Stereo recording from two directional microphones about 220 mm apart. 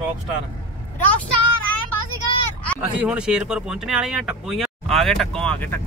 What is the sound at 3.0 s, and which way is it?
Speech, 5° right (ahead or behind).